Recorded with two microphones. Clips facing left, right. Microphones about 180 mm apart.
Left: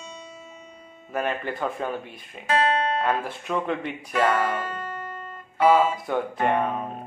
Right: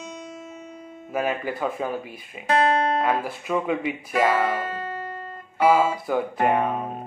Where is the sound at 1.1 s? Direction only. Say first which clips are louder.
Right 2 dB; 5° right (ahead or behind).